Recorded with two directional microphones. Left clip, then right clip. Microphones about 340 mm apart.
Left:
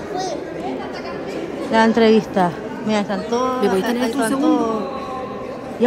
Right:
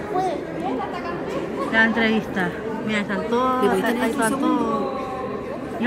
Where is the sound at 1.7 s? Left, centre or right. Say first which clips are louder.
Left 5 dB; centre.